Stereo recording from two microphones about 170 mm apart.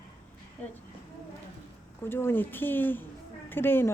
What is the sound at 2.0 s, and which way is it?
A woman's voice, 15° left (ahead or behind).